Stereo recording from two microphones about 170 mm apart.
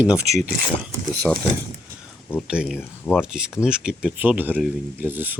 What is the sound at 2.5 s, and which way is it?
Speech, 5° right (ahead or behind).